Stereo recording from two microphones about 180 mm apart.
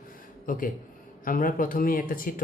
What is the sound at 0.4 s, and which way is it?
Speech, 50° left (ahead or behind).